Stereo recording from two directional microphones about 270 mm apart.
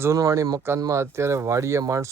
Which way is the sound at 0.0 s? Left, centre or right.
Centre.